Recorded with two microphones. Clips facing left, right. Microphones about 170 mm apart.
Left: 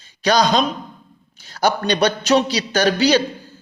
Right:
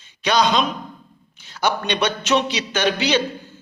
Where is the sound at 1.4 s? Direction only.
40° left (ahead or behind).